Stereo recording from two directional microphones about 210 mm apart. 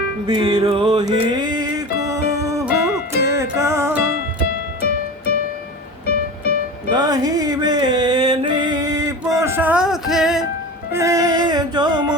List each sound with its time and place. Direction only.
0.3 s music: 20° right (ahead or behind)
6.9 s music: 20° right (ahead or behind); by 10.4 s centre (ahead or behind)
10.9 s music: 15° right (ahead or behind)